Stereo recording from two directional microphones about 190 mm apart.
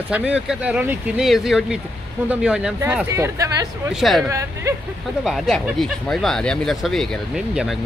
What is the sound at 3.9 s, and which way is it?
Speech, centre (ahead or behind).